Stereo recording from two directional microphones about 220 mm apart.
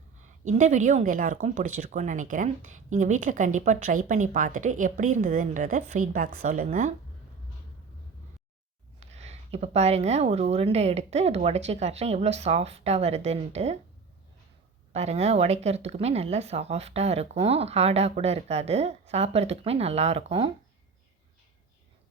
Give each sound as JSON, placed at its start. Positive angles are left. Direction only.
{"t": 0.2, "sound": "a woman's voice", "side_deg": -35}
{"t": 9.0, "sound": "speech", "side_deg": -30}
{"t": 14.9, "sound": "speech", "side_deg": -30}